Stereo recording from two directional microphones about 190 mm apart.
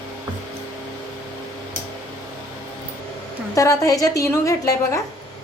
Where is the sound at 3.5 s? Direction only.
15° left (ahead or behind).